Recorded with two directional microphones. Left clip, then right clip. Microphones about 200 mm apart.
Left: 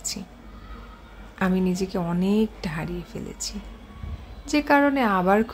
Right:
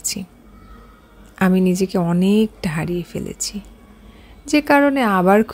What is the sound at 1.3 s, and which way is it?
A woman's voice, 30° right (ahead or behind).